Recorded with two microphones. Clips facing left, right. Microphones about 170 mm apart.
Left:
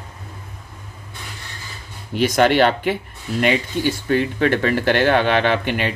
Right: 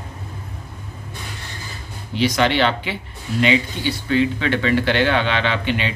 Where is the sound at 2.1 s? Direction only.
50° left (ahead or behind).